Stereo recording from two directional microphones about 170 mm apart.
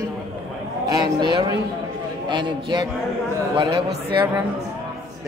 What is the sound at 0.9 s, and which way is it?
Speech, 25° right (ahead or behind).